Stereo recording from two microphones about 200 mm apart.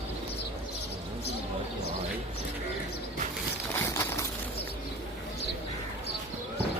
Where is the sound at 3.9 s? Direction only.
15° left (ahead or behind).